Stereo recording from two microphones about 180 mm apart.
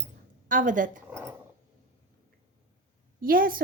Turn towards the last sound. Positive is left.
turn(degrees=-55)  # may be behind; listen again after turning